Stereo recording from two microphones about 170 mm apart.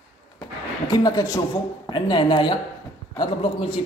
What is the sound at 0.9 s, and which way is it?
A woman's voice, 20° left (ahead or behind).